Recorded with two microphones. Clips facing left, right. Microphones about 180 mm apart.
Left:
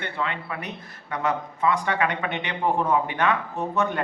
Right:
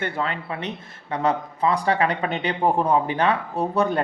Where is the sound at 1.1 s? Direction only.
35° right (ahead or behind).